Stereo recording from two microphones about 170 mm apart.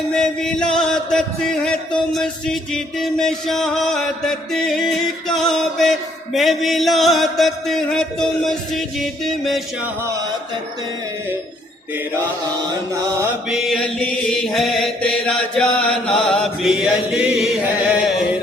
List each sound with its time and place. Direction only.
0.1 s chant: 5° left (ahead or behind)
12.9 s mantra: 20° right (ahead or behind)
13.5 s chant: 5° left (ahead or behind)